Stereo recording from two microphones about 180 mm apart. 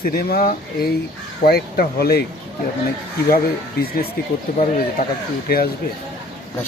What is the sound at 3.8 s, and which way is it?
Speech, 60° left (ahead or behind).